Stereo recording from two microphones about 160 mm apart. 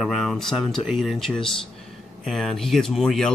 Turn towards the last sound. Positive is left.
turn(degrees=5)  # may be behind; listen again after turning